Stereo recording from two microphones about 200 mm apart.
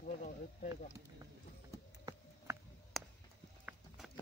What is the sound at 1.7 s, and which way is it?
Clip-clop, 15° right (ahead or behind).